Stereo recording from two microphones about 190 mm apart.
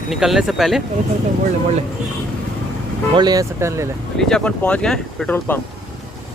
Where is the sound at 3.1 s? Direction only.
20° right (ahead or behind).